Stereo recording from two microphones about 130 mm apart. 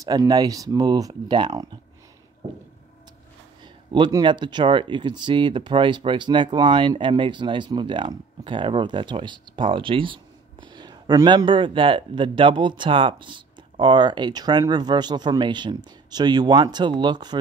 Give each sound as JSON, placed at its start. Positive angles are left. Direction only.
{"t": 0.0, "sound": "speech", "side_deg": -30}
{"t": 3.6, "sound": "speech", "side_deg": -35}